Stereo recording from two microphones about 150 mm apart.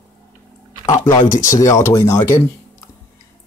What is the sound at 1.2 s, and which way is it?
Speech, 60° left (ahead or behind).